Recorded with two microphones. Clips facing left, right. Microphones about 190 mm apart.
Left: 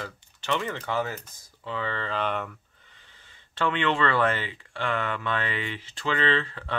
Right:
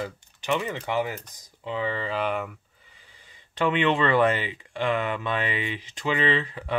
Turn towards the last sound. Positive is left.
turn(degrees=-15)  # may be behind; listen again after turning